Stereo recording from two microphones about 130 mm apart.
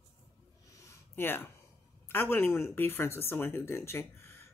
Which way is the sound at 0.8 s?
15° left (ahead or behind).